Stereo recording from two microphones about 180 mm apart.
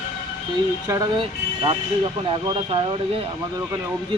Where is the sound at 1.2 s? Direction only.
30° right (ahead or behind).